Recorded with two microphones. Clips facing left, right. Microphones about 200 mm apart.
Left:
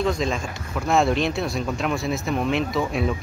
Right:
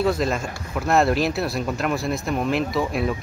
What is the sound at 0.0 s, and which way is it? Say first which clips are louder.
Speech: right 2 dB; 5° right (ahead or behind).